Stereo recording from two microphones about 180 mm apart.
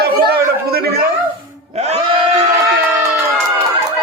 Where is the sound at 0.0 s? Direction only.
60° right (ahead or behind).